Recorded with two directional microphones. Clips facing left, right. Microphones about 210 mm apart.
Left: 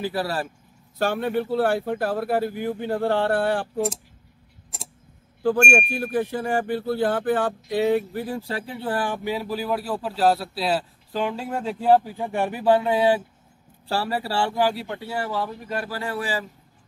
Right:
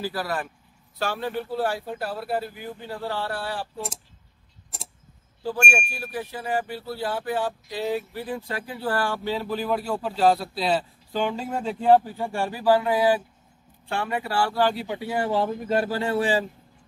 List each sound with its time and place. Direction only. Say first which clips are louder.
0.0 s speech: left 3 dB; 25° left (ahead or behind)
0.9 s speech: left 5 dB; 55° left (ahead or behind)
5.7 s speech: left 7 dB; 50° left (ahead or behind); by 14.5 s 30° left (ahead or behind)
14.5 s speech: even; 10° left (ahead or behind)
14.9 s speech: right 3 dB; 15° right (ahead or behind)